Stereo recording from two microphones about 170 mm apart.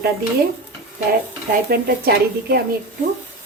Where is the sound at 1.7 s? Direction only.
65° right (ahead or behind).